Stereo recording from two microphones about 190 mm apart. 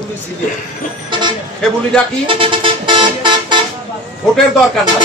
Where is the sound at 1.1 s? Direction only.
25° right (ahead or behind).